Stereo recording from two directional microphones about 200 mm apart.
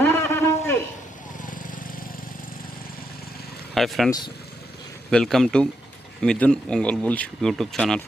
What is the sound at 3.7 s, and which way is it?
Speech, centre (ahead or behind).